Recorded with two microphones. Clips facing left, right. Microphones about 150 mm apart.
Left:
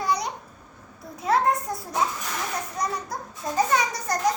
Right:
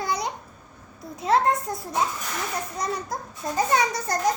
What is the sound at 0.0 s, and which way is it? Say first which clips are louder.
Babbling: left 2 dB; 25° right (ahead or behind).